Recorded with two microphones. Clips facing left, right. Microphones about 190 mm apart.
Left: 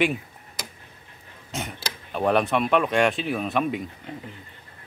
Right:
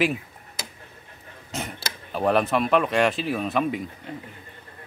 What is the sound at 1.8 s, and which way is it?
Speech, centre (ahead or behind).